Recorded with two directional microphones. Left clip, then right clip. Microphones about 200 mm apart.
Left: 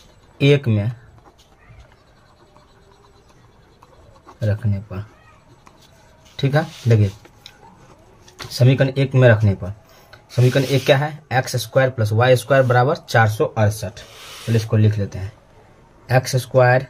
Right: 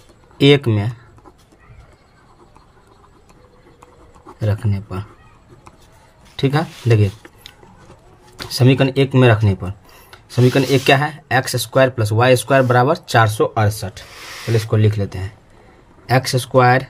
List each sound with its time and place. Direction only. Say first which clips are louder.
0.4 s speech: right 4 dB; 50° right (ahead or behind)
4.4 s speech: right 1 dB; 50° right (ahead or behind)
6.3 s speech: right 1 dB; 45° right (ahead or behind)
8.5 s speech: right 3 dB; 45° right (ahead or behind)